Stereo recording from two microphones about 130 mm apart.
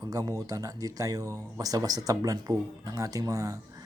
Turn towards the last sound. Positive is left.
turn(degrees=-25)  # may be behind; listen again after turning